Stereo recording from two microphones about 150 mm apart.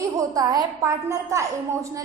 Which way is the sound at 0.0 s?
25° right (ahead or behind).